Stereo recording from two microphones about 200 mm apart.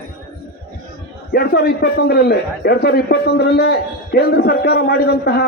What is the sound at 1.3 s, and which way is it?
A man's voice, 50° left (ahead or behind).